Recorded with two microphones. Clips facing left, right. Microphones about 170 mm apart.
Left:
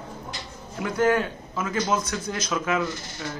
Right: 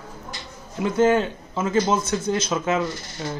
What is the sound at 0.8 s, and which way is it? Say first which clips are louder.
Speech: right 4 dB; 25° right (ahead or behind).